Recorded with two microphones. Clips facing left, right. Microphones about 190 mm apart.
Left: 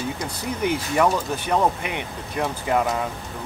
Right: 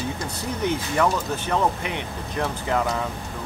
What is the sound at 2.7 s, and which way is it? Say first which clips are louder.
Speech: left 3 dB; 10° left (ahead or behind).